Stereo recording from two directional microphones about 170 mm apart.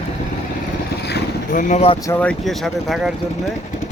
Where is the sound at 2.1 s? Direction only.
10° left (ahead or behind).